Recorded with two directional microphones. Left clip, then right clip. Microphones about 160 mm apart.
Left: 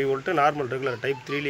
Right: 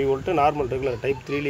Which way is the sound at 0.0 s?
Centre (ahead or behind).